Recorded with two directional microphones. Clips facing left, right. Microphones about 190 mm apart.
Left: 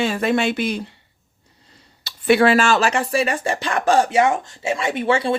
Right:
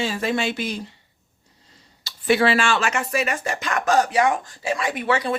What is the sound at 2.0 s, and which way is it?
Speech, 60° left (ahead or behind).